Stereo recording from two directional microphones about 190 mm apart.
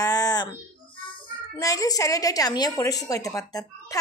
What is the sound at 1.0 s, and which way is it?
A child's voice, 20° left (ahead or behind).